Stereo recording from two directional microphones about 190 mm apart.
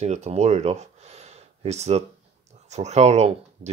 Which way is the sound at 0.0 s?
35° right (ahead or behind).